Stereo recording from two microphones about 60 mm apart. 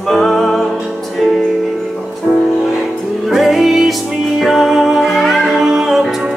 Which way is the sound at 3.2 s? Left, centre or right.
Centre.